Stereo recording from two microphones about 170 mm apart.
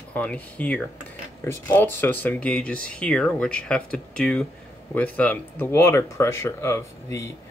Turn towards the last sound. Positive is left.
turn(degrees=15)  # may be behind; listen again after turning